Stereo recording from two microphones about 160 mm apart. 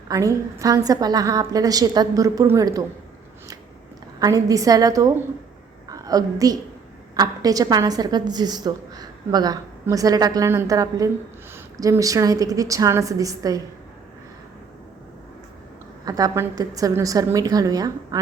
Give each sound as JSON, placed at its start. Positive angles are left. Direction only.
{"t": 0.1, "sound": "a woman's voice", "side_deg": -20}
{"t": 4.2, "sound": "a woman's voice", "side_deg": -20}
{"t": 16.0, "sound": "a woman's voice", "side_deg": -25}